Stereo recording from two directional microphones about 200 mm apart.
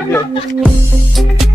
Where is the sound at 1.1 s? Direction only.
Centre (ahead or behind).